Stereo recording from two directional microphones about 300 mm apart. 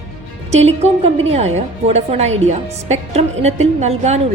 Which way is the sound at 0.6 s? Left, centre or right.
Right.